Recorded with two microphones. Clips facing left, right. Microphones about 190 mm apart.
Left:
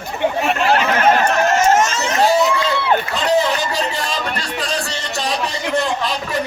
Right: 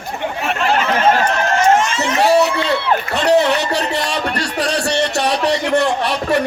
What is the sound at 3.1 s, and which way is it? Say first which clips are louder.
Music: right 7 dB; 70° right (ahead or behind).